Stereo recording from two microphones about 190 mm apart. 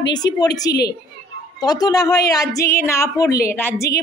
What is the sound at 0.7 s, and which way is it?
Speech, 55° left (ahead or behind).